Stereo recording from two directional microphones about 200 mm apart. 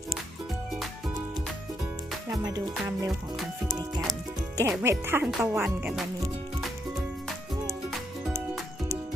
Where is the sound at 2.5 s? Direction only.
15° right (ahead or behind).